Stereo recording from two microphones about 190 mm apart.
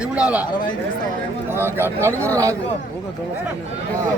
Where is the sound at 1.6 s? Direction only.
10° right (ahead or behind).